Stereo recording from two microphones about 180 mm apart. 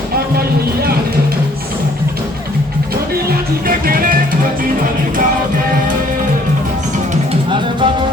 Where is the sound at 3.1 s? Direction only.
55° right (ahead or behind).